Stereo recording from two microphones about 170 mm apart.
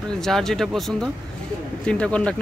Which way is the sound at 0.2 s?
5° left (ahead or behind).